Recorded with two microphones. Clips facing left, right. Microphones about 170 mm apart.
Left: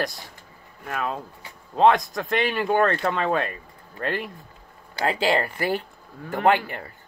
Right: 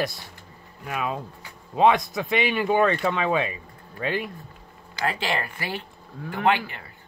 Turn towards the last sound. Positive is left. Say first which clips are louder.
# left 3 dB
turn(degrees=45)  # may be behind; listen again after turning